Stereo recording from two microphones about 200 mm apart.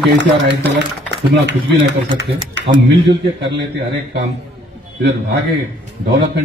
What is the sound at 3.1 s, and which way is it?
A man's voice, 60° right (ahead or behind).